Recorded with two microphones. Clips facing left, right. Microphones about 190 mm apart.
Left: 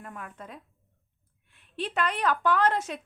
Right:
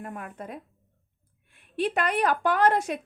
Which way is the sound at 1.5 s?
10° right (ahead or behind).